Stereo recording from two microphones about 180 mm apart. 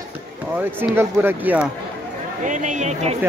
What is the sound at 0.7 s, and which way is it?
Speech, 10° right (ahead or behind).